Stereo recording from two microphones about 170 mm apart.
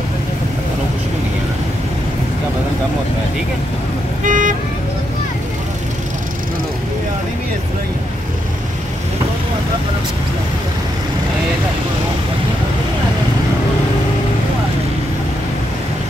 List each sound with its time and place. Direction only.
4.2 s vehicle: 50° right (ahead or behind)